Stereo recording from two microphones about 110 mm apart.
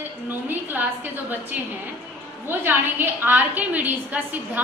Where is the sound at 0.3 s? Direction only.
20° right (ahead or behind).